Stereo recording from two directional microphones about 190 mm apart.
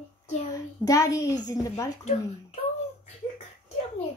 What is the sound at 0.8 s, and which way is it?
A child's voice, 20° left (ahead or behind).